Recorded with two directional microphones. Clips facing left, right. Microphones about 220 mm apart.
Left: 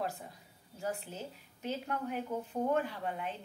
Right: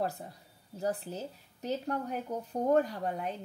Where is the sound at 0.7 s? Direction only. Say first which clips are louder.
Right 5 dB; 35° right (ahead or behind).